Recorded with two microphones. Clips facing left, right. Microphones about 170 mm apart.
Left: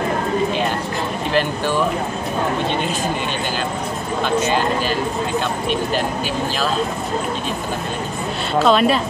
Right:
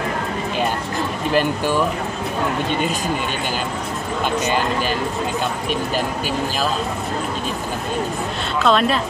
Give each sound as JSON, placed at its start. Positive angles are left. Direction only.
{"t": 8.5, "sound": "a woman's voice", "side_deg": 0}